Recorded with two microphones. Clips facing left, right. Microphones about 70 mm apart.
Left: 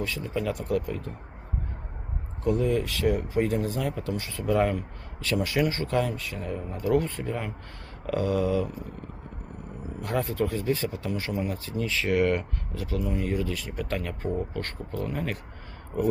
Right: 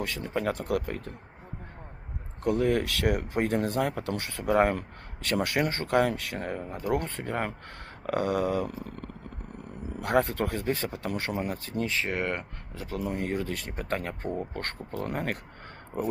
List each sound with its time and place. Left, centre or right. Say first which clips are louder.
0.0 s speech: even; right
0.5 s speech: left 1 dB; right
2.4 s speech: even; right
11.9 s speech: left 8 dB; right
12.9 s speech: left 1 dB; right
15.9 s speech: left 4 dB; right